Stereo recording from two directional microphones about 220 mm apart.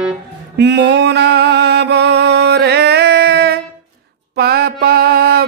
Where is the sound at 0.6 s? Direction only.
50° right (ahead or behind).